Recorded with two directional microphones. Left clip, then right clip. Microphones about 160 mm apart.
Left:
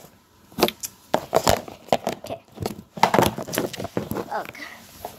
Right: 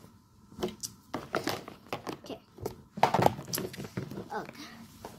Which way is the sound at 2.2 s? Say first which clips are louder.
Left 10 dB; 30° right (ahead or behind).